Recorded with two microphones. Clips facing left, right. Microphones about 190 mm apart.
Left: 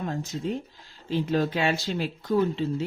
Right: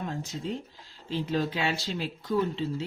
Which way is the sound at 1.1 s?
50° left (ahead or behind).